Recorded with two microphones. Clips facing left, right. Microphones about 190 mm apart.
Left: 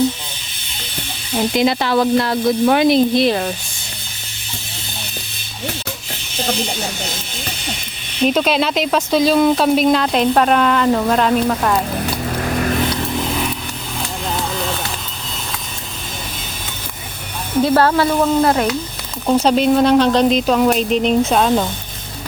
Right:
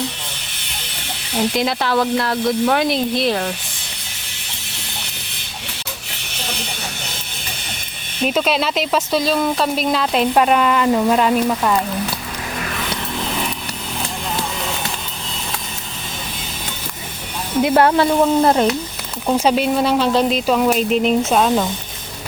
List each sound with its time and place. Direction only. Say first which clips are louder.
1.5 s speech: left 5 dB; centre (ahead or behind)
8.2 s speech: left 3 dB; centre (ahead or behind)
17.6 s speech: even; 20° right (ahead or behind); by 21.7 s centre (ahead or behind)